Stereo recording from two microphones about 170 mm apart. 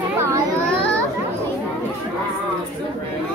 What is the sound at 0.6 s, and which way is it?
Children playing, 5° left (ahead or behind).